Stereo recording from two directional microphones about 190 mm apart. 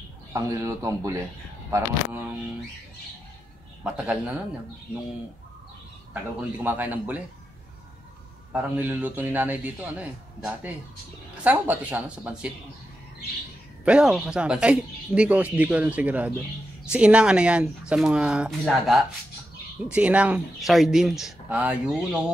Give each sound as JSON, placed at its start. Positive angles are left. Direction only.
{"t": 0.3, "sound": "a man's voice", "side_deg": -15}
{"t": 3.8, "sound": "speech", "side_deg": -5}
{"t": 6.6, "sound": "a man's voice", "side_deg": -10}
{"t": 8.7, "sound": "a man's voice", "side_deg": -10}
{"t": 13.8, "sound": "speech", "side_deg": -5}